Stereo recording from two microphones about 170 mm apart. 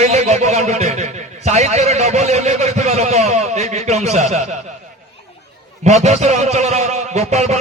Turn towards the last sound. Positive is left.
turn(degrees=-40)  # may be behind; listen again after turning